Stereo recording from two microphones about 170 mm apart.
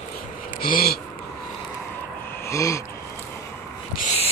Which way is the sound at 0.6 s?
60° left (ahead or behind).